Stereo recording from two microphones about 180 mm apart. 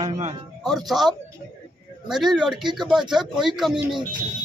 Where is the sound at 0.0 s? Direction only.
40° right (ahead or behind).